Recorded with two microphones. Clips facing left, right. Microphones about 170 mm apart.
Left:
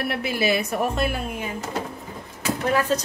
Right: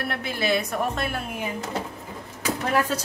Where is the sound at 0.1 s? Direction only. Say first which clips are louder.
Left 1 dB; 5° left (ahead or behind).